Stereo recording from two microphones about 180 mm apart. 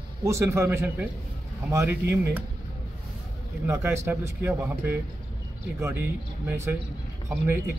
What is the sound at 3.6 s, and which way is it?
Speech, 15° right (ahead or behind).